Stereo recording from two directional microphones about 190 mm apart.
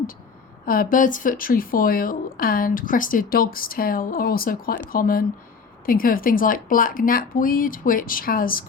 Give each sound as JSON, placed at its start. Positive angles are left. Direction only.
{"t": 0.6, "sound": "a woman's voice", "side_deg": 50}